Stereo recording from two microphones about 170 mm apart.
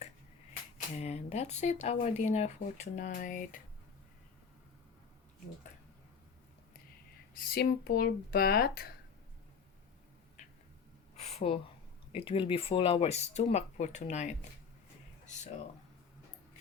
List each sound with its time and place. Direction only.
0.9 s speech: 40° left (ahead or behind)
7.3 s speech: 65° left (ahead or behind)
11.2 s a sound: 40° left (ahead or behind)
12.1 s speech: 35° left (ahead or behind)